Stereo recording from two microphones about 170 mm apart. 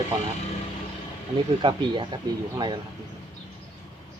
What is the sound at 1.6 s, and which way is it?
Speech, 30° right (ahead or behind).